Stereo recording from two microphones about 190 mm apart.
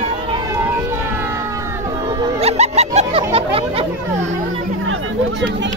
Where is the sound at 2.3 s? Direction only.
35° right (ahead or behind).